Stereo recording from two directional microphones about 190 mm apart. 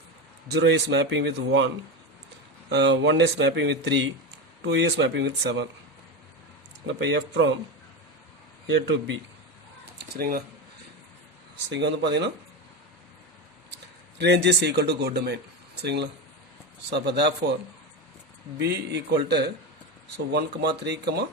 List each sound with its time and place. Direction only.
0.5 s speech: 65° right (ahead or behind)
6.8 s speech: 70° right (ahead or behind)
10.0 s speech: 50° right (ahead or behind)
11.7 s speech: 65° right (ahead or behind)
14.2 s speech: 65° right (ahead or behind)
18.6 s speech: 60° right (ahead or behind)